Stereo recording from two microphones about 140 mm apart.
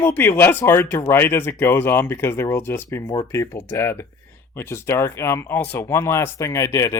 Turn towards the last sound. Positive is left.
turn(degrees=20)  # may be behind; listen again after turning